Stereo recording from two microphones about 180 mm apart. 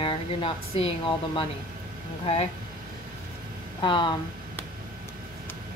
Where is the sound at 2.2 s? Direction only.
35° left (ahead or behind).